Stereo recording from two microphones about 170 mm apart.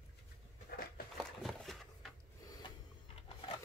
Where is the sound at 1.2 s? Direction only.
Centre (ahead or behind).